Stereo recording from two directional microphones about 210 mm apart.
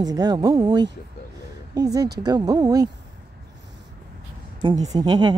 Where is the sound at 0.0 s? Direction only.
20° right (ahead or behind).